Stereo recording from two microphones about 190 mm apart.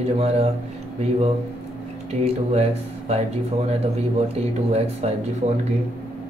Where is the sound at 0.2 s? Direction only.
30° right (ahead or behind).